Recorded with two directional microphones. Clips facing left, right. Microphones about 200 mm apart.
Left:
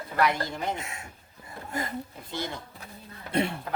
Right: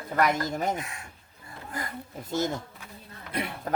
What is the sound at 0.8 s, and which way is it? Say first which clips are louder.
Speech: right 1 dB; 25° left (ahead or behind).